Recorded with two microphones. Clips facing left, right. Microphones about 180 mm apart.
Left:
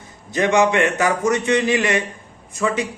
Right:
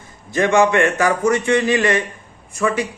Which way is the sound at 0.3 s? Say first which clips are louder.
Right 2 dB; 20° left (ahead or behind).